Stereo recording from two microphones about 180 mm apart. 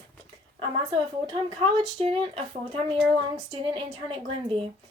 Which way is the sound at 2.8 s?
Centre (ahead or behind).